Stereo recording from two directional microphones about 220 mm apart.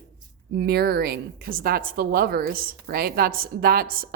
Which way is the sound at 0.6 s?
45° right (ahead or behind).